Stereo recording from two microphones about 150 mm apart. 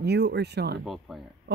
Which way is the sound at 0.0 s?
90° right.